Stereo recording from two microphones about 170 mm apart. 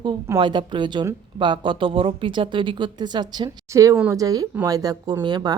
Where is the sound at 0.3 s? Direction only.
30° right (ahead or behind).